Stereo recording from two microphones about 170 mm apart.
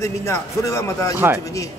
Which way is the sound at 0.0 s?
20° left (ahead or behind).